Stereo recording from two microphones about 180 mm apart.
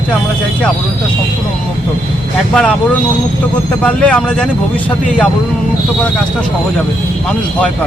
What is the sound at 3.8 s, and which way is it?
Speech, 5° left (ahead or behind).